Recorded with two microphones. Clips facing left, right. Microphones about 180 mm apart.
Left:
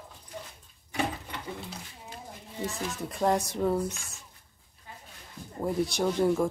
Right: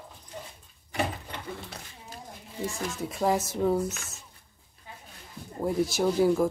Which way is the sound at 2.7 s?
Centre (ahead or behind).